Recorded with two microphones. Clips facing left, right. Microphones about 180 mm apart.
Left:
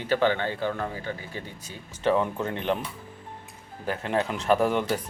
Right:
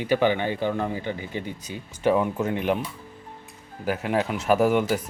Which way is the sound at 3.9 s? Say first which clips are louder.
Right 2 dB; 10° right (ahead or behind).